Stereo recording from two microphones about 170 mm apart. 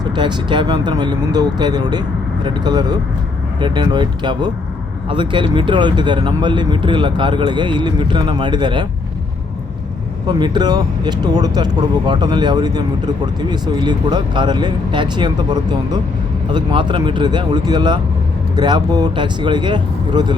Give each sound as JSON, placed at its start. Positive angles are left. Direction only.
{"t": 0.0, "sound": "speech", "side_deg": -25}
{"t": 10.2, "sound": "speech", "side_deg": -25}